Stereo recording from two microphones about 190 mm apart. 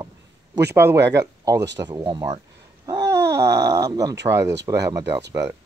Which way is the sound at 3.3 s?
15° right (ahead or behind).